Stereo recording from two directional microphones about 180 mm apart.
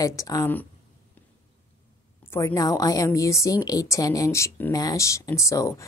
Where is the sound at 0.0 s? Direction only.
20° left (ahead or behind).